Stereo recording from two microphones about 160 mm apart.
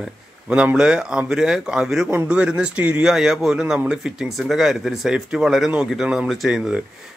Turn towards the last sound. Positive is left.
turn(degrees=0)  # may be behind; listen again after turning